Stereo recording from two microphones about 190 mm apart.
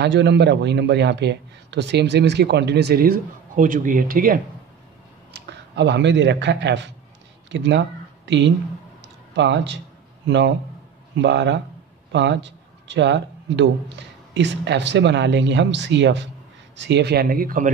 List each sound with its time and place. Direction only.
0.0 s a man's voice: 65° right (ahead or behind); by 4.4 s 50° right (ahead or behind)
5.3 s a man's voice: 65° right (ahead or behind)
9.0 s a sound: 70° right (ahead or behind)
10.2 s a man's voice: 70° right (ahead or behind); by 17.6 s 50° right (ahead or behind)